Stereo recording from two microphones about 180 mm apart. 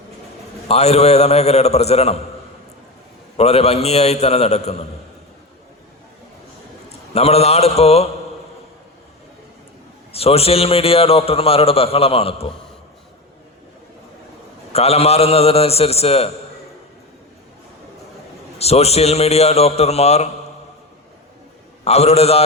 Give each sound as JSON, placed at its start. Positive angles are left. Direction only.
{"t": 0.7, "sound": "a man's voice", "side_deg": 35}
{"t": 3.3, "sound": "a man's voice", "side_deg": 35}
{"t": 7.1, "sound": "a man's voice", "side_deg": 35}
{"t": 10.1, "sound": "a man's voice", "side_deg": 35}
{"t": 14.7, "sound": "a man's voice", "side_deg": 35}
{"t": 18.6, "sound": "a man's voice", "side_deg": 35}
{"t": 21.8, "sound": "a man's voice", "side_deg": 35}